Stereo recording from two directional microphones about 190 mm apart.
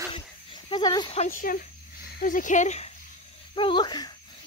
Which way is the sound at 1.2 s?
45° left (ahead or behind).